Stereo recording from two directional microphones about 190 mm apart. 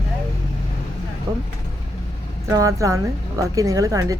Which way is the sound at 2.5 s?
20° right (ahead or behind).